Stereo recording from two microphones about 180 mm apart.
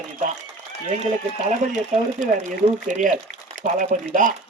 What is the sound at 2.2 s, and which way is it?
A man's voice, 45° right (ahead or behind).